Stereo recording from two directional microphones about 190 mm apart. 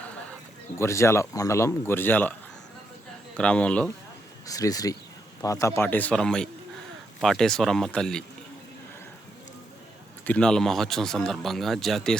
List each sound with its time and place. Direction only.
0.8 s speech: 15° left (ahead or behind)
3.3 s speech: 5° left (ahead or behind)
4.4 s speech: 20° left (ahead or behind)
10.2 s speech: 5° left (ahead or behind)